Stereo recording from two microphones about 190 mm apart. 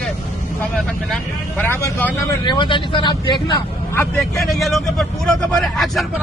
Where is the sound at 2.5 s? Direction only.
25° left (ahead or behind).